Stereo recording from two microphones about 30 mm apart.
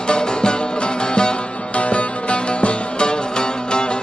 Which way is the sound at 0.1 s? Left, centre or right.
Left.